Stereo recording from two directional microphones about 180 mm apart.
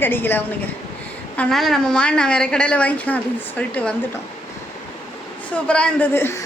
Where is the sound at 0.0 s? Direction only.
10° left (ahead or behind).